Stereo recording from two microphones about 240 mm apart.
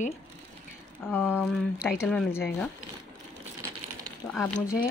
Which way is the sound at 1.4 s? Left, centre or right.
Centre.